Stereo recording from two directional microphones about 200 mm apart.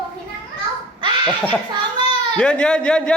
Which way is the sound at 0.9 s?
25° right (ahead or behind).